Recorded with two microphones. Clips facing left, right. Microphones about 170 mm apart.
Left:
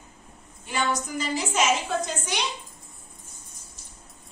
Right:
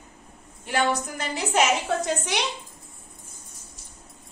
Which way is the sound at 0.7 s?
60° right (ahead or behind).